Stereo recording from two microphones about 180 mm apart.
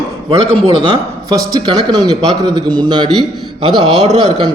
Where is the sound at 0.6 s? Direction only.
30° right (ahead or behind).